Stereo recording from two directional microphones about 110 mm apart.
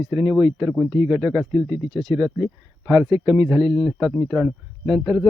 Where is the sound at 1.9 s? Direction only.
40° right (ahead or behind).